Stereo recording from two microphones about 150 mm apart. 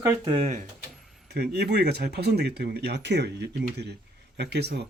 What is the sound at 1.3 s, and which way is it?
Speech, 90° right.